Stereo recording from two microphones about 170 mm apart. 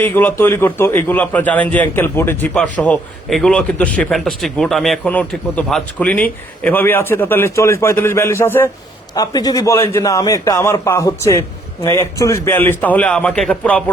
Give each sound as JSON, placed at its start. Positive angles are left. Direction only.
{"t": 0.0, "sound": "speech", "side_deg": 10}